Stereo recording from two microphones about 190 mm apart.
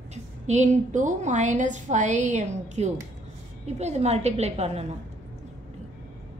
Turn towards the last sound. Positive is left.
turn(degrees=-35)  # may be behind; listen again after turning